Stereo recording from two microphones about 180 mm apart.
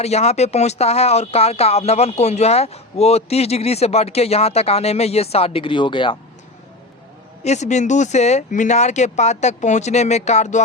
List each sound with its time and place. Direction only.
0.0 s speech: 35° left (ahead or behind)
7.4 s speech: 40° left (ahead or behind)